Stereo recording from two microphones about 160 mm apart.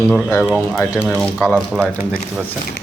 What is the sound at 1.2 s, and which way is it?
Speech, centre (ahead or behind).